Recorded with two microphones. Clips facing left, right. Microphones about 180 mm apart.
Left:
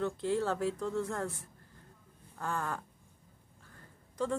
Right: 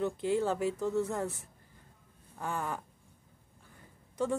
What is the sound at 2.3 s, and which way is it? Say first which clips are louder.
Speech: even; 15° right (ahead or behind).